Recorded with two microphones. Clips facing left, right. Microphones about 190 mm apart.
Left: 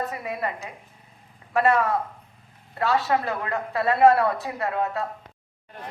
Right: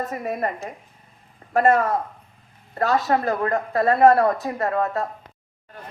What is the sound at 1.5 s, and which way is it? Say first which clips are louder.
A woman's voice: right 3 dB; 45° right (ahead or behind).